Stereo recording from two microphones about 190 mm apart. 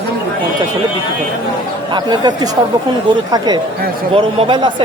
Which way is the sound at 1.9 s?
20° right (ahead or behind).